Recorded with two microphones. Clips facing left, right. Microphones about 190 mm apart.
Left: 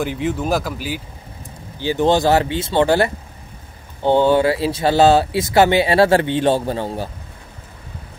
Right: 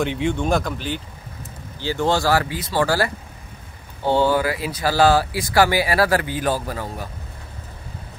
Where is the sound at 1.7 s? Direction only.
15° left (ahead or behind).